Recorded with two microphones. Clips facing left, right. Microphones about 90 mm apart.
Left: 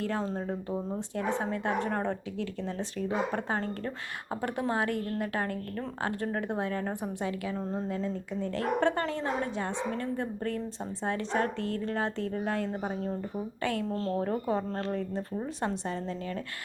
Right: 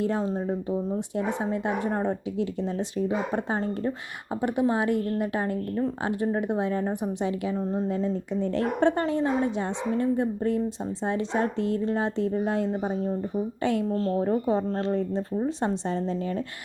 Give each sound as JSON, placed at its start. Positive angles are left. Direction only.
{"t": 0.0, "sound": "a woman's voice", "side_deg": -15}
{"t": 13.9, "sound": "speech", "side_deg": -10}
{"t": 14.3, "sound": "a woman's voice", "side_deg": -20}